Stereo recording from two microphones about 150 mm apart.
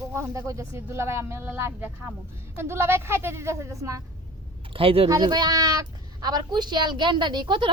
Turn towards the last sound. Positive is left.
turn(degrees=-35)  # may be behind; listen again after turning